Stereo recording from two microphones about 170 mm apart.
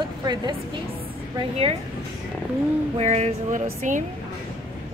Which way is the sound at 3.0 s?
40° right (ahead or behind).